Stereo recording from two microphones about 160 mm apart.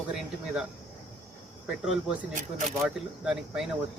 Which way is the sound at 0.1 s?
5° right (ahead or behind).